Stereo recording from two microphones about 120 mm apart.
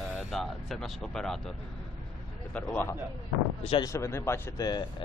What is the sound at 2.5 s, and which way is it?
A man's voice, 15° left (ahead or behind).